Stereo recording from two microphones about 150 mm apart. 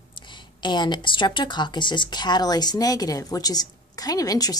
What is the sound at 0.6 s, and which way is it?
Speech, 30° left (ahead or behind).